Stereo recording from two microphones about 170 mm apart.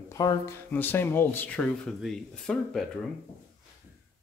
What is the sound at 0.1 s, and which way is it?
Speech, 20° left (ahead or behind).